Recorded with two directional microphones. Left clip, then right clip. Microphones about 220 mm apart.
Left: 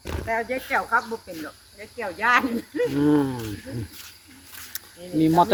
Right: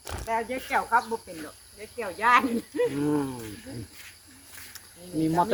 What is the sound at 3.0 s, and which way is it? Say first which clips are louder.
Speech: left 7 dB; 35° left (ahead or behind).